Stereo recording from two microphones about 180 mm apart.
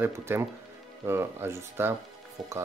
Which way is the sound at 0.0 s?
15° right (ahead or behind).